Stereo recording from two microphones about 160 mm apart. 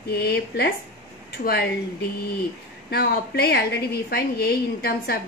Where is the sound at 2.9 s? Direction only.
80° left.